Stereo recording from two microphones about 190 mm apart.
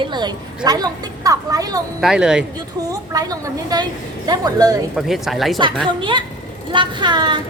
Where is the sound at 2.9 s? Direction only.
20° right (ahead or behind).